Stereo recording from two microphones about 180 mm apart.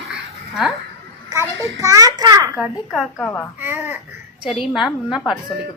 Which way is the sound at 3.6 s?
15° right (ahead or behind).